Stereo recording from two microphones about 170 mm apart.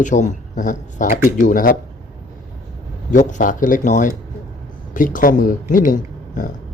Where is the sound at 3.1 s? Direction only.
45° left (ahead or behind).